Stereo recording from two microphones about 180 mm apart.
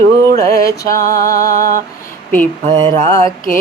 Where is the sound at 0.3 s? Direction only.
20° left (ahead or behind).